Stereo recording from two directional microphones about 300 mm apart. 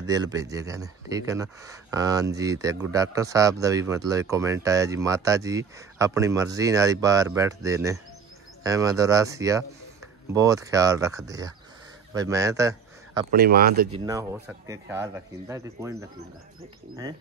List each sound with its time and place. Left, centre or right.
0.1 s speech: centre
13.3 s speech: right
13.9 s speech: centre